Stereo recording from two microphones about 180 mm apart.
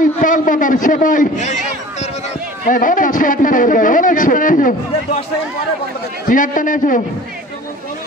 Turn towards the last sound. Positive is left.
turn(degrees=45)  # may be behind; listen again after turning